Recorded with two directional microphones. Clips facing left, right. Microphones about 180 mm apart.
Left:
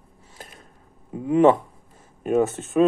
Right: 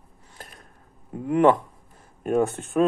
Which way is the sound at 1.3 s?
20° left (ahead or behind).